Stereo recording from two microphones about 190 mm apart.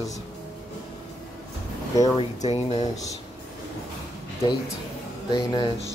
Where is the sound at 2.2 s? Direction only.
35° left (ahead or behind).